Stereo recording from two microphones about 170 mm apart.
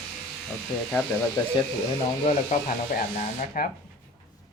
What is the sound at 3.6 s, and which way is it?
Speech, 55° left (ahead or behind).